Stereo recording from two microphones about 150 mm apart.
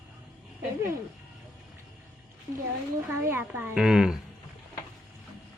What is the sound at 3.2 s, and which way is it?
Speech, 15° right (ahead or behind).